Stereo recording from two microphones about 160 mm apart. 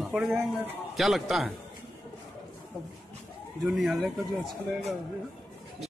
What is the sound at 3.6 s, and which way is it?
Speech, centre (ahead or behind).